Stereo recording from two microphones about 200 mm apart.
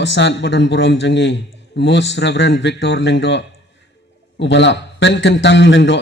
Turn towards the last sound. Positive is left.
turn(degrees=65)  # may be behind; listen again after turning